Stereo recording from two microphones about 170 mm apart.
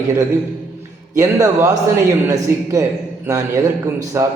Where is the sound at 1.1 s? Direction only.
20° right (ahead or behind).